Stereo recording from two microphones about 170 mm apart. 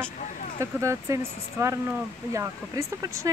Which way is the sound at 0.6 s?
15° right (ahead or behind).